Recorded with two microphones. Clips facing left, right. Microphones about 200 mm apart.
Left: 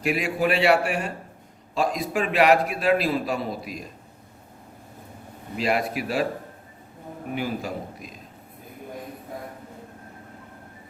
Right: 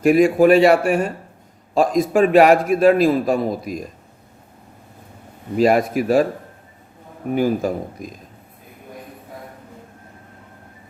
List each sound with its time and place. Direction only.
0.0 s a man's voice: 45° right (ahead or behind)
5.5 s a man's voice: 45° right (ahead or behind)
7.3 s a man's voice: 45° right (ahead or behind)